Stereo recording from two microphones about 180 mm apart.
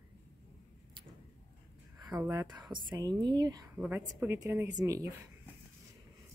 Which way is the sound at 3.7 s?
10° right (ahead or behind).